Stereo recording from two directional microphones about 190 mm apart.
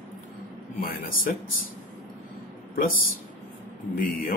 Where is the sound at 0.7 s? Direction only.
50° left (ahead or behind).